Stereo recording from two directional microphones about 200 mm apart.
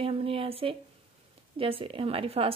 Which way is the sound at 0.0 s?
30° right (ahead or behind).